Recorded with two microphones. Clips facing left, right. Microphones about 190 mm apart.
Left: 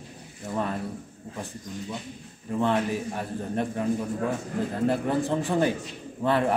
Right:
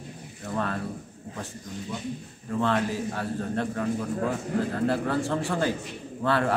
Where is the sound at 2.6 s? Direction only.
15° left (ahead or behind).